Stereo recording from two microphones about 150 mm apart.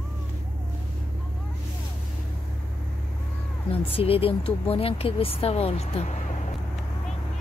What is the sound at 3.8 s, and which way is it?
Speech, 40° left (ahead or behind).